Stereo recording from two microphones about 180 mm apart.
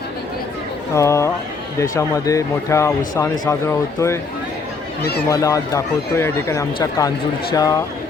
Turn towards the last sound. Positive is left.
turn(degrees=20)  # may be behind; listen again after turning